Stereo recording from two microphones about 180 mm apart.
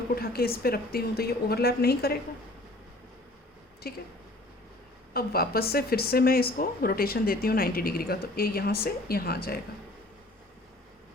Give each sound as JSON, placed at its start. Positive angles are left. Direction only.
{"t": 0.2, "sound": "a woman's voice", "side_deg": 55}
{"t": 3.9, "sound": "a woman's voice", "side_deg": 60}
{"t": 5.1, "sound": "a woman's voice", "side_deg": 60}